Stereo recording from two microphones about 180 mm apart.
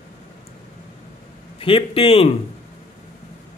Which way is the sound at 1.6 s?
30° left (ahead or behind).